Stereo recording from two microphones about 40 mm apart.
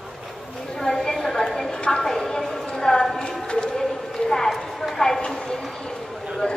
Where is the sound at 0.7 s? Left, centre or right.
Centre.